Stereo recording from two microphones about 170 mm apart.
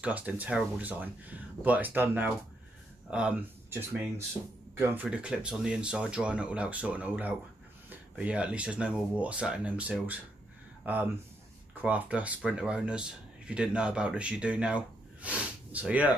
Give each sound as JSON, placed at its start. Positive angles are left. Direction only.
{"t": 0.0, "sound": "speech", "side_deg": -10}